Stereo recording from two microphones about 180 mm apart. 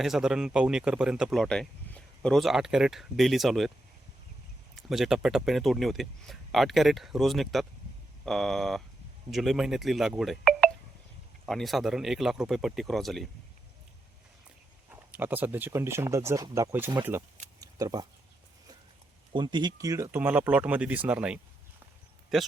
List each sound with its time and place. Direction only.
0.0 s speech: 5° right (ahead or behind)
4.7 s speech: centre (ahead or behind)
15.1 s speech: 10° right (ahead or behind)
17.6 s a sound: 20° right (ahead or behind)
19.3 s speech: 25° right (ahead or behind); by 22.5 s centre (ahead or behind)